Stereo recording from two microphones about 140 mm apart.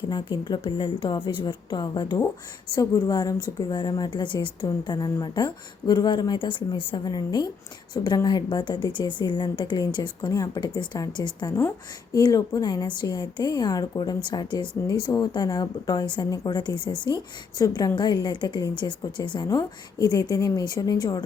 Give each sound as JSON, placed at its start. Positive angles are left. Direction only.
{"t": 0.1, "sound": "a woman's voice", "side_deg": 35}